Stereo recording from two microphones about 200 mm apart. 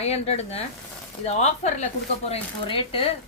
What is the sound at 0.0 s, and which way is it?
Speech, 30° left (ahead or behind).